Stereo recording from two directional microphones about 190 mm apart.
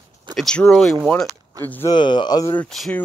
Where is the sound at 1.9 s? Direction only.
25° left (ahead or behind).